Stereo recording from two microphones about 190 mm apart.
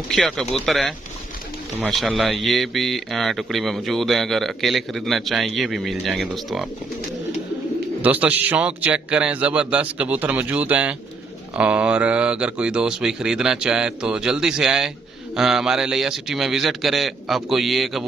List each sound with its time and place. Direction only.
0.1 s speech: 5° left (ahead or behind)
2.0 s speech: centre (ahead or behind)
8.0 s a man's voice: 10° right (ahead or behind)